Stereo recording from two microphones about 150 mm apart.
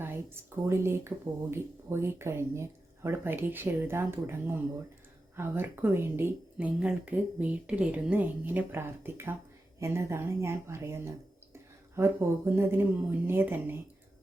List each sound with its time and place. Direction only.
0.0 s speech: 15° right (ahead or behind)